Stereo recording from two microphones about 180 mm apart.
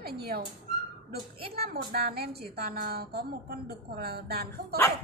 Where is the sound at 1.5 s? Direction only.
60° right (ahead or behind).